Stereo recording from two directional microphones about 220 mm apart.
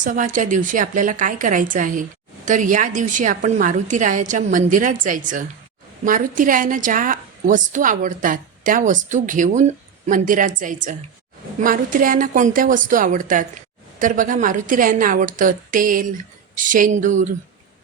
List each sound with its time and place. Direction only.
0.0 s a woman's voice: 35° right (ahead or behind)